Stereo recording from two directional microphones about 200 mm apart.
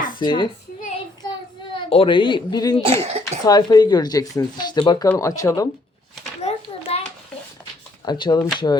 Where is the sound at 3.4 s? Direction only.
20° left (ahead or behind).